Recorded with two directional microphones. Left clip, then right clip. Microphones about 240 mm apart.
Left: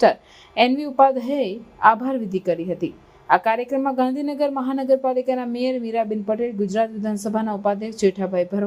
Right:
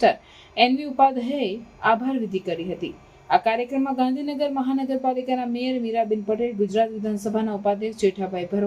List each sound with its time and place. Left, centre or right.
0.0 s a woman's voice: left